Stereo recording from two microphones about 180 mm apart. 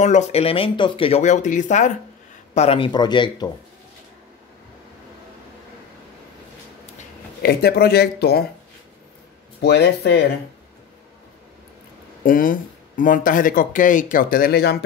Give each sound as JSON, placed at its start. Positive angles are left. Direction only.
{"t": 0.0, "sound": "speech", "side_deg": 40}
{"t": 7.4, "sound": "speech", "side_deg": 60}
{"t": 9.6, "sound": "speech", "side_deg": 65}
{"t": 12.2, "sound": "speech", "side_deg": 50}